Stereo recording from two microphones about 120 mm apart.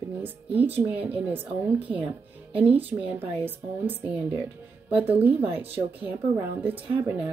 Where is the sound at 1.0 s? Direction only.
15° right (ahead or behind).